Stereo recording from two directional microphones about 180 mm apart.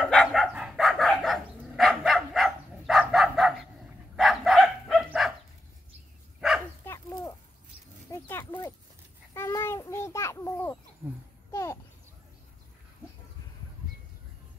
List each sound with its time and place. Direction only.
0.0 s dog: 5° left (ahead or behind)
4.2 s bow-wow: centre (ahead or behind)
6.8 s dog: 15° left (ahead or behind)
8.1 s horse: 15° left (ahead or behind)
9.3 s a sound: 15° left (ahead or behind)
11.5 s babbling: 15° left (ahead or behind)